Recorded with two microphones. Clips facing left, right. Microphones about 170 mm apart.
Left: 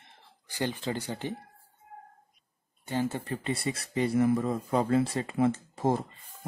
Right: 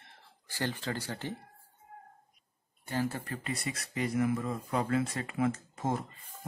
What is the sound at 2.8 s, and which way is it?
Speech, 20° left (ahead or behind).